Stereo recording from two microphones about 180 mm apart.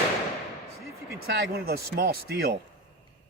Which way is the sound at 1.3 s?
60° right (ahead or behind).